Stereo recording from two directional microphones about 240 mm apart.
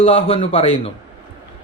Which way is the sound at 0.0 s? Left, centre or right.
Left.